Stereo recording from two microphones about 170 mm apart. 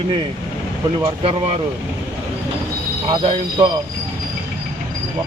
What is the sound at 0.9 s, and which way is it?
Speech, 30° right (ahead or behind).